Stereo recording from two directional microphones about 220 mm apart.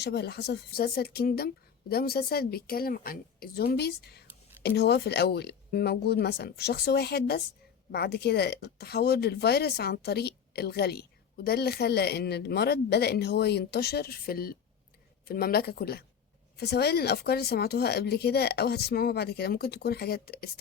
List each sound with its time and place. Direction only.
0.0 s speech: 50° left (ahead or behind)